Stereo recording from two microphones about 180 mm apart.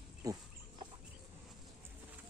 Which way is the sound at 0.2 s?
20° right (ahead or behind).